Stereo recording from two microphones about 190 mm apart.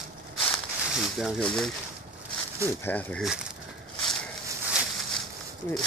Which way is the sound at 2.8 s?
5° left (ahead or behind).